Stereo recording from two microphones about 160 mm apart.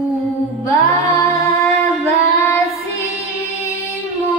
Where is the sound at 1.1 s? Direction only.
20° left (ahead or behind).